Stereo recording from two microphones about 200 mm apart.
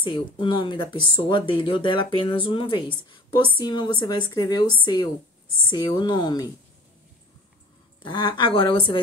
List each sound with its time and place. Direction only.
0.0 s speech: 25° left (ahead or behind)
8.0 s speech: 25° left (ahead or behind)